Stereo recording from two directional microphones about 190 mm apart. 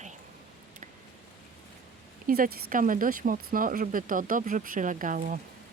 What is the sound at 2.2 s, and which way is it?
Speech, 45° right (ahead or behind).